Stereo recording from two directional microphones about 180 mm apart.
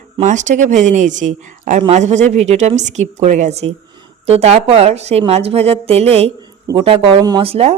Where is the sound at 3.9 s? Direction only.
25° right (ahead or behind).